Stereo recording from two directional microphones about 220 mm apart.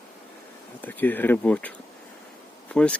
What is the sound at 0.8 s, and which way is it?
Speech, 10° left (ahead or behind).